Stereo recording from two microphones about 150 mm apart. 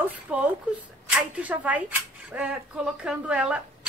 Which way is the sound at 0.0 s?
10° right (ahead or behind).